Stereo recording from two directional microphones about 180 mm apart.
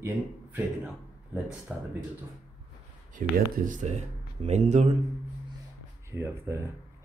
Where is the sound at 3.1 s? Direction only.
45° right (ahead or behind).